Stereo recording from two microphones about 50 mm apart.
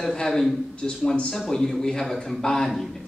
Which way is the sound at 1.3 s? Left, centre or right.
Centre.